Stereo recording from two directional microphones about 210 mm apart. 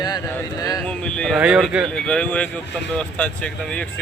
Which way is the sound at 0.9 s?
5° left (ahead or behind).